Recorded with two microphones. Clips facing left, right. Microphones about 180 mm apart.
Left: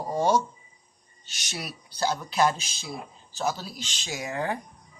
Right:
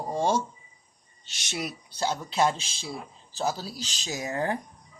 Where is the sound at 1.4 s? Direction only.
25° right (ahead or behind); by 4.3 s 40° right (ahead or behind).